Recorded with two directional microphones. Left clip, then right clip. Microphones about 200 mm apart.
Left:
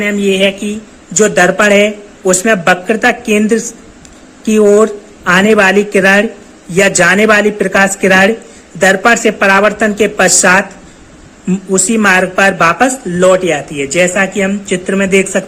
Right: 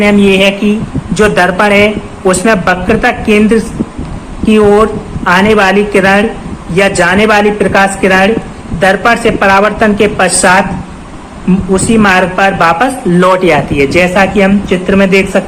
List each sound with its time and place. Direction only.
0.0 s a man's voice: 25° left (ahead or behind)
11.7 s a woman's voice: 40° left (ahead or behind)
13.1 s a man's voice: 20° left (ahead or behind)